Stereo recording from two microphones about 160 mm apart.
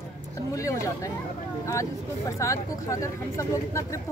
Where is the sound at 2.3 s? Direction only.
20° left (ahead or behind).